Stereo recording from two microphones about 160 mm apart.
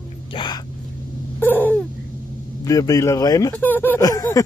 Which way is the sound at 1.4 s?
10° left (ahead or behind).